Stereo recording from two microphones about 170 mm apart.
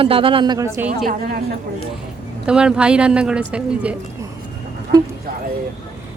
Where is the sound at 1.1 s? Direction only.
65° right (ahead or behind).